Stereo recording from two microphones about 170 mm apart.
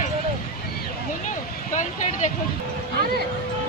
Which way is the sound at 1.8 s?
45° left (ahead or behind).